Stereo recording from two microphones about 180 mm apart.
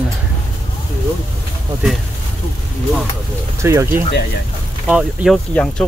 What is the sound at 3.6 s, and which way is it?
Speech, 15° right (ahead or behind).